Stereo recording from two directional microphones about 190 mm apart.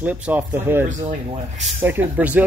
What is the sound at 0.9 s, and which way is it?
Speech, 40° right (ahead or behind).